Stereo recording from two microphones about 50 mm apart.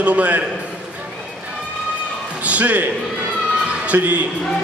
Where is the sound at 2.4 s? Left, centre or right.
Right.